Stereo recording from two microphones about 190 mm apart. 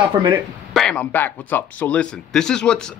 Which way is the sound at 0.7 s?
5° left (ahead or behind).